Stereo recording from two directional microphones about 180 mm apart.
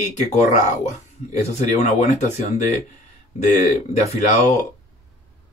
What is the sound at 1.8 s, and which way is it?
Speech, 40° left (ahead or behind).